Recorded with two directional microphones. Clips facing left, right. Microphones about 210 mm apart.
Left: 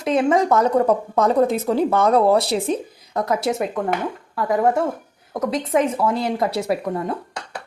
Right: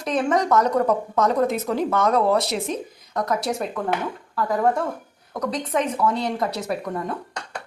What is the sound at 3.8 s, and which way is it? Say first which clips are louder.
Speech: left 3 dB; 20° left (ahead or behind).